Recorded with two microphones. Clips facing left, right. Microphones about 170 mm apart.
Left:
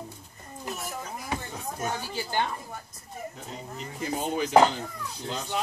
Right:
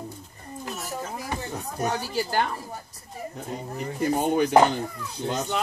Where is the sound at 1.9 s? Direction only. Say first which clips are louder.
Right 7 dB; 75° right (ahead or behind).